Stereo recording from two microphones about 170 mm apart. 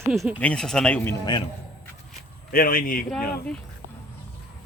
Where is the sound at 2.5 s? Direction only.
60° left (ahead or behind).